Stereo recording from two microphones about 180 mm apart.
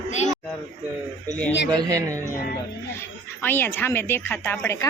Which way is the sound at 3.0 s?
10° left (ahead or behind).